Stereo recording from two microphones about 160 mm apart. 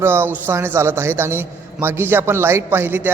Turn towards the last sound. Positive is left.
turn(degrees=-10)  # may be behind; listen again after turning